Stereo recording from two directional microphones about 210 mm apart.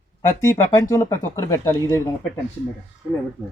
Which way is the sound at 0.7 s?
15° left (ahead or behind).